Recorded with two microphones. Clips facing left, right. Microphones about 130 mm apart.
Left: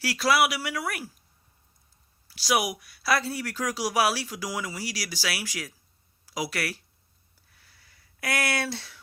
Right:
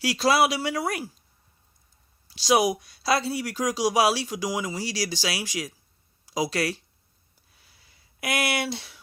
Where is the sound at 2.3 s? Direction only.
20° right (ahead or behind).